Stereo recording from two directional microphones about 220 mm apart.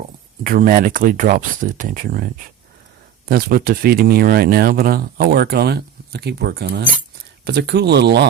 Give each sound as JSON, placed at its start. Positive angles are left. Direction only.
{"t": 0.4, "sound": "speech", "side_deg": -40}
{"t": 3.2, "sound": "speech", "side_deg": -40}